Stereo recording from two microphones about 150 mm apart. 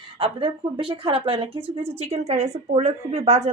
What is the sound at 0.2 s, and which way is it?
Speech, 35° right (ahead or behind).